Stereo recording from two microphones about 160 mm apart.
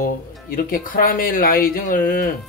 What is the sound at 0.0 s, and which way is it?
Speech, 65° left (ahead or behind).